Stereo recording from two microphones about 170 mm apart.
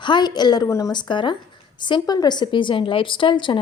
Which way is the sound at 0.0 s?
25° left (ahead or behind).